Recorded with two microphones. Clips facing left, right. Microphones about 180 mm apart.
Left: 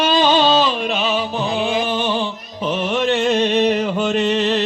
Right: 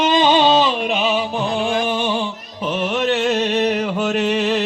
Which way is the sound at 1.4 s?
5° left (ahead or behind).